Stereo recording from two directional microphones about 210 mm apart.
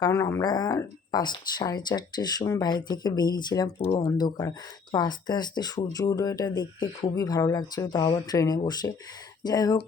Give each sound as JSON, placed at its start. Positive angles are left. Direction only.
{"t": 0.0, "sound": "speech", "side_deg": 15}